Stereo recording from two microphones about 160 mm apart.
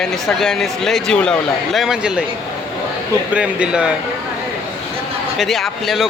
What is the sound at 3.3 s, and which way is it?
Speech, 5° right (ahead or behind).